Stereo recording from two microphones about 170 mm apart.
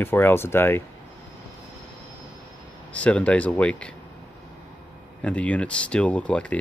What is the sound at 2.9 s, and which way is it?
Speech, 5° left (ahead or behind).